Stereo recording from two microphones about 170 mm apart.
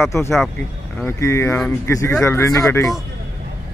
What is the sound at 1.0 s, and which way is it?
Speech, 15° left (ahead or behind).